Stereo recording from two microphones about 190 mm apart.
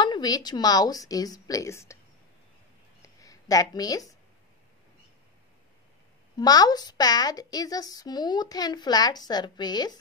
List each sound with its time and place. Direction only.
0.0 s a woman's voice: 20° left (ahead or behind)
3.0 s a sound: 15° left (ahead or behind)
6.3 s a woman's voice: 20° left (ahead or behind)